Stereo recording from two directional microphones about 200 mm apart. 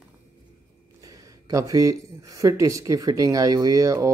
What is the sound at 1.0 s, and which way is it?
Speech, 15° right (ahead or behind).